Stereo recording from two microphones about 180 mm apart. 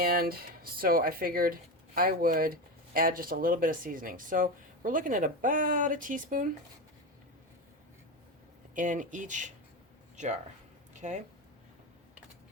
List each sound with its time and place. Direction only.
0.0 s speech: 55° right (ahead or behind)
8.7 s speech: 45° right (ahead or behind)